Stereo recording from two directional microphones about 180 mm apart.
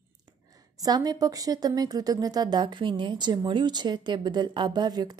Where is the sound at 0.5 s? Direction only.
20° right (ahead or behind).